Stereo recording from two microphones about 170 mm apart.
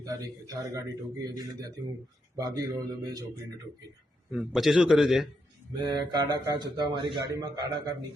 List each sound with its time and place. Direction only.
0.0 s a man's voice: 20° right (ahead or behind)
4.3 s a man's voice: centre (ahead or behind)
5.8 s a man's voice: 25° right (ahead or behind)